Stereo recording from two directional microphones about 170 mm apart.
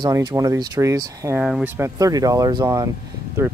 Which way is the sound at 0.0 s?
20° right (ahead or behind).